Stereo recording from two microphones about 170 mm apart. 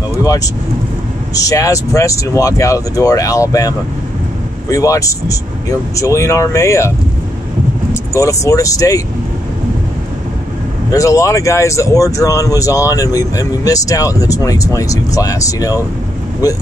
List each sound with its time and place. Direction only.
1.3 s speech: 20° left (ahead or behind)
7.9 s speech: 20° left (ahead or behind)
10.9 s speech: 20° left (ahead or behind)